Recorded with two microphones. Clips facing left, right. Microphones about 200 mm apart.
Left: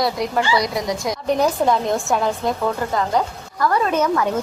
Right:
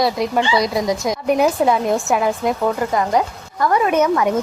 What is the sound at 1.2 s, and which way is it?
Speech, 10° right (ahead or behind).